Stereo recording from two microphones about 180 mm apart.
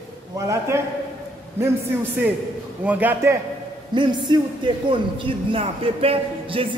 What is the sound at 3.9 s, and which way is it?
A man's voice, 25° right (ahead or behind).